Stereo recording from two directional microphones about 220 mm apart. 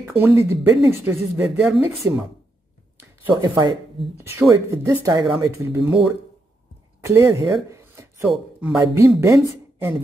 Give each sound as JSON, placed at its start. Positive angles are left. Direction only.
{"t": 0.0, "sound": "speech", "side_deg": -10}
{"t": 3.3, "sound": "speech", "side_deg": -20}